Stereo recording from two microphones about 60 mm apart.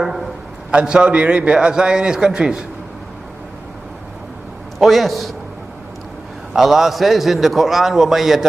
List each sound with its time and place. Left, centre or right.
0.7 s a man's voice: centre
4.7 s a man's voice: centre
6.5 s a man's voice: centre